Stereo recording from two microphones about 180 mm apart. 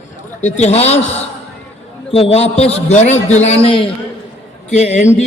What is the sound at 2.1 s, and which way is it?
A man's voice, 35° left (ahead or behind).